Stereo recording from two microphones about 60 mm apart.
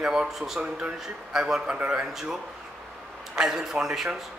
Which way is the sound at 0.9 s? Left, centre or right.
Centre.